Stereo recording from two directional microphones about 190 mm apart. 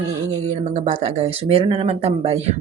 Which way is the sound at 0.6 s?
35° right (ahead or behind).